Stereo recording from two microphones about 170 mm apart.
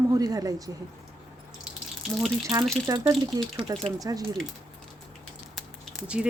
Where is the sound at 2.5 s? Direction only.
20° right (ahead or behind).